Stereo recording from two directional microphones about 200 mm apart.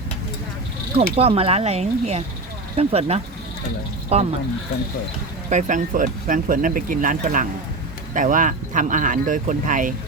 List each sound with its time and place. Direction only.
1.1 s speech: 30° right (ahead or behind)
5.5 s speech: 40° right (ahead or behind)